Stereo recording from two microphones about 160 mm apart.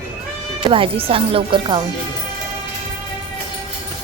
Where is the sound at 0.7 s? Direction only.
35° right (ahead or behind).